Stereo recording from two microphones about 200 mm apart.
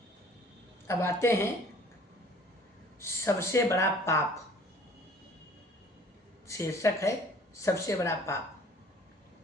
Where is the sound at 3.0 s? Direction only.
10° left (ahead or behind).